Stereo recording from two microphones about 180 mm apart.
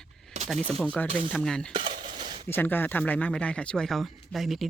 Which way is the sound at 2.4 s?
10° left (ahead or behind).